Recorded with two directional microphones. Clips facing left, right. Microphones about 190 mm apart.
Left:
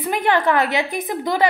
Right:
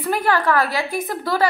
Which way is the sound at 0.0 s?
20° left (ahead or behind).